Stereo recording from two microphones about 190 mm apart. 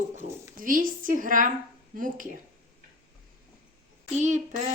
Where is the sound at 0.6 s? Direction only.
45° right (ahead or behind).